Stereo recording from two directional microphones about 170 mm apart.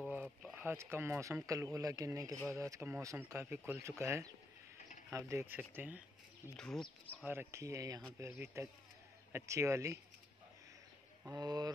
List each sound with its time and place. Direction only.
0.0 s speech: 10° right (ahead or behind)
6.5 s speech: 5° left (ahead or behind)
7.2 s speech: 15° right (ahead or behind)
11.3 s speech: 25° right (ahead or behind)